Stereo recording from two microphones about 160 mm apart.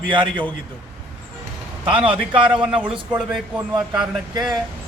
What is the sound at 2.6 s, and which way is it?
Speech, 5° right (ahead or behind).